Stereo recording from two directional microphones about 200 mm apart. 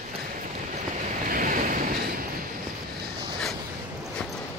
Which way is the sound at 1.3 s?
40° right (ahead or behind).